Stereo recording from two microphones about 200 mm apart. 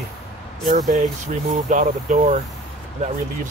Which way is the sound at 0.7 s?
35° right (ahead or behind).